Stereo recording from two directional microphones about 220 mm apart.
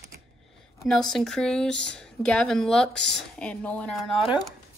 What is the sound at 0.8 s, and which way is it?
Speech, 5° left (ahead or behind).